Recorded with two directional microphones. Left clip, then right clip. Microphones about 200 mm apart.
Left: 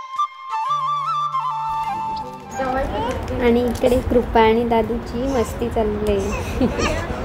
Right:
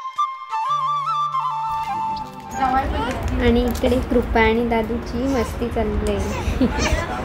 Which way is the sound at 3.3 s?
25° left (ahead or behind).